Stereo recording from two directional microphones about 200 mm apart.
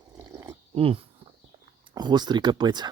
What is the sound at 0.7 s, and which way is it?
Pig, 25° right (ahead or behind).